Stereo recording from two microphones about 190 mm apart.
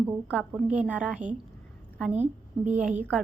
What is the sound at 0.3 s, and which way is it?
A woman's voice, 5° right (ahead or behind).